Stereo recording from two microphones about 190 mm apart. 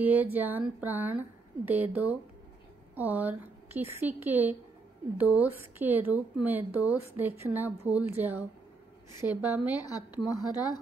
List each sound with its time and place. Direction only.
0.0 s a woman's voice: 10° right (ahead or behind)
9.8 s speech: 20° left (ahead or behind)